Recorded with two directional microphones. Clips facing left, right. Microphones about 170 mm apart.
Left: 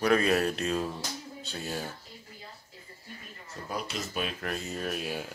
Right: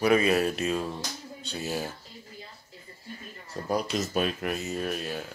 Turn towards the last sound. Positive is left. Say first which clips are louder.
# right 3 dB
turn(degrees=-5)  # may be behind; listen again after turning